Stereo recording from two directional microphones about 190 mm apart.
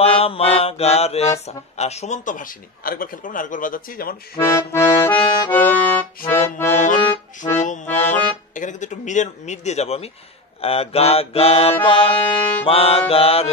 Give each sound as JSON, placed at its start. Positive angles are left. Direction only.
{"t": 0.0, "sound": "mantra", "side_deg": 30}
{"t": 1.4, "sound": "speech", "side_deg": 35}
{"t": 4.4, "sound": "accordion", "side_deg": 10}
{"t": 5.1, "sound": "accordion", "side_deg": 25}
{"t": 5.5, "sound": "accordion", "side_deg": 10}
{"t": 6.8, "sound": "accordion", "side_deg": 40}
{"t": 8.5, "sound": "mantra", "side_deg": 40}